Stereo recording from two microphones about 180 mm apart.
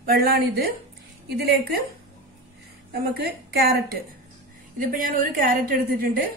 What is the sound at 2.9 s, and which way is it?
Speech, 60° right (ahead or behind).